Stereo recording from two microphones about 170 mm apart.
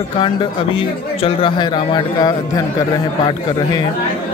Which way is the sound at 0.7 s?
30° left (ahead or behind).